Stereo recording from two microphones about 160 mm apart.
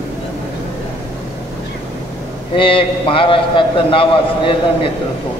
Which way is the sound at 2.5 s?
35° left (ahead or behind).